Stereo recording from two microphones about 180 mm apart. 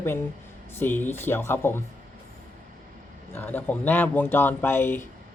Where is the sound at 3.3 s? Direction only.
10° left (ahead or behind).